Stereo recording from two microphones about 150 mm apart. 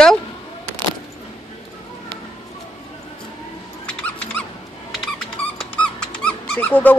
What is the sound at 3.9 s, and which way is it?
Dog, 10° left (ahead or behind).